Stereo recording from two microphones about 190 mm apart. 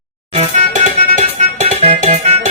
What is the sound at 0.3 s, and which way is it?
Music, 40° right (ahead or behind).